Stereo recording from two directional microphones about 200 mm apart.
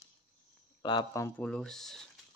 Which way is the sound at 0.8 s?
20° left (ahead or behind).